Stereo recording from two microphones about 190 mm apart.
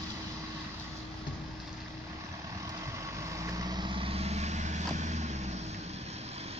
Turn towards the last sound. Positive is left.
turn(degrees=-35)  # may be behind; listen again after turning